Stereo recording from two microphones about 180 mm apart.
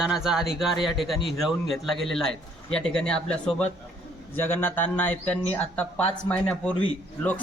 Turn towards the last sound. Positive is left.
turn(degrees=10)  # may be behind; listen again after turning